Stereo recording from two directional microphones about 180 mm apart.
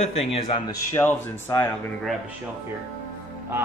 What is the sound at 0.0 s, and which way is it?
Speech, 35° left (ahead or behind).